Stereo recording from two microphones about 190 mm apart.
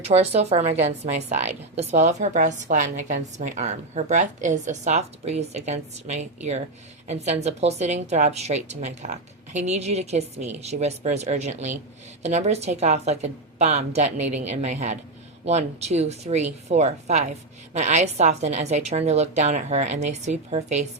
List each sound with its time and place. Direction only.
0.0 s a woman's voice: 35° right (ahead or behind)